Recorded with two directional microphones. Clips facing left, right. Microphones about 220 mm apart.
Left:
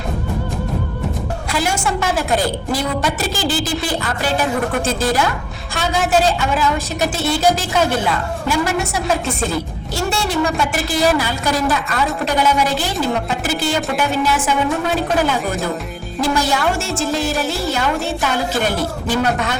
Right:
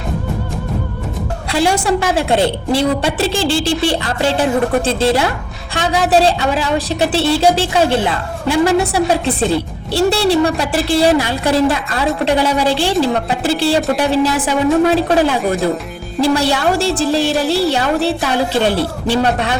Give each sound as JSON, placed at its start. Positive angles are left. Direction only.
{"t": 1.5, "sound": "a woman's voice", "side_deg": -30}